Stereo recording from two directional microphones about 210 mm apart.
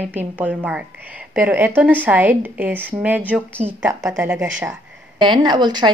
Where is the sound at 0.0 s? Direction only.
10° right (ahead or behind).